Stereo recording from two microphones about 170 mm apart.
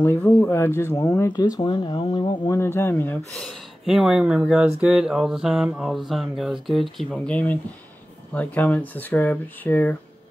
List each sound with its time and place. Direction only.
0.0 s speech: 10° left (ahead or behind)
2.6 s speech: 15° left (ahead or behind)
3.4 s mantra: centre (ahead or behind)
8.3 s speech: 10° left (ahead or behind)